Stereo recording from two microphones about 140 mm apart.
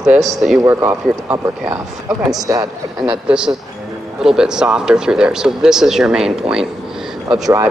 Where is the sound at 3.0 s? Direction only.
5° right (ahead or behind).